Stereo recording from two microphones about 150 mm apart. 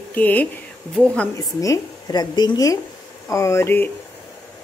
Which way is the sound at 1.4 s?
25° left (ahead or behind).